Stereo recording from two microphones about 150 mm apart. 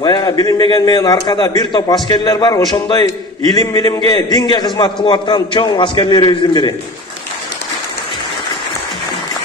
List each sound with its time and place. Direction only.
0.0 s a man's voice: 30° left (ahead or behind)